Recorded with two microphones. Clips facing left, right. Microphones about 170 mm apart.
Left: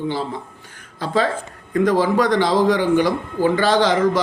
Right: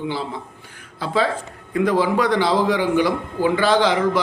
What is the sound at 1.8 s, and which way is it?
Speech, 40° left (ahead or behind).